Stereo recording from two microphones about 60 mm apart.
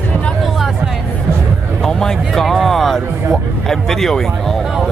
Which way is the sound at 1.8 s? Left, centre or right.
Centre.